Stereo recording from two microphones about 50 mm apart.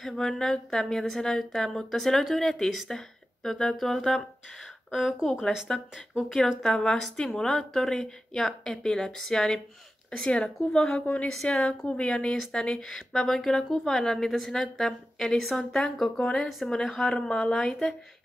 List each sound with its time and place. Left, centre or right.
0.0 s speech: centre
10.2 s speech: centre
10.8 s speech: centre
11.6 s speech: left; by 17.1 s centre
17.1 s speech: centre